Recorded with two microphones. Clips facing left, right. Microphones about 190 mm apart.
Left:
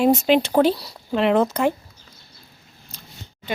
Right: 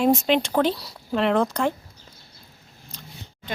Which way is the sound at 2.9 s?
5° left (ahead or behind).